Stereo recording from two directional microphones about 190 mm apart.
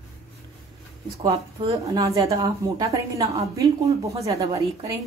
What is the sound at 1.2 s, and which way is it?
A woman's voice, 25° right (ahead or behind).